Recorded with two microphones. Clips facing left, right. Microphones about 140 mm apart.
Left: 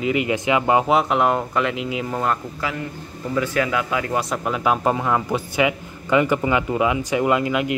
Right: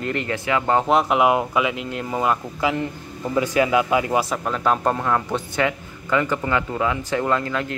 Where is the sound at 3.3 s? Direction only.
20° right (ahead or behind).